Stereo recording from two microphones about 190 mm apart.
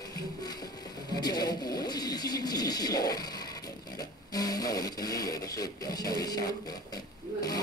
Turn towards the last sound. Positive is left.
turn(degrees=20)  # may be behind; listen again after turning